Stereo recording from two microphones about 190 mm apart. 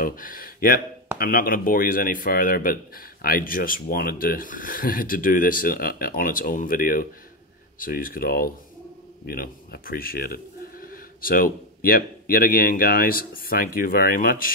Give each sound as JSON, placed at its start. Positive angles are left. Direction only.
{"t": 0.0, "sound": "speech", "side_deg": 45}